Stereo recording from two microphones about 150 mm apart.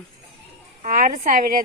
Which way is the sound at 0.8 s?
65° right (ahead or behind).